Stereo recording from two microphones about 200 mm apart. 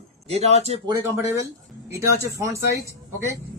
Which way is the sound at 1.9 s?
15° right (ahead or behind).